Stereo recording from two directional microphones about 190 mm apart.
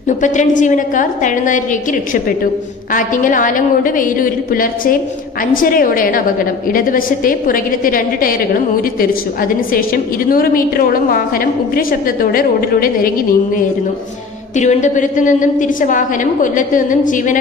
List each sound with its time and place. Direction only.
0.2 s a woman's voice: 40° left (ahead or behind)
9.4 s a woman's voice: 50° left (ahead or behind)
14.6 s a woman's voice: 40° left (ahead or behind)